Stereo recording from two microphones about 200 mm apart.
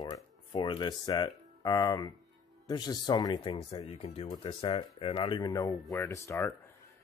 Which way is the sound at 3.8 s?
30° left (ahead or behind).